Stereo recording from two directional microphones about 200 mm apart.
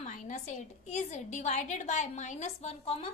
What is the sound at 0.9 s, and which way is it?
A woman's voice, 35° left (ahead or behind).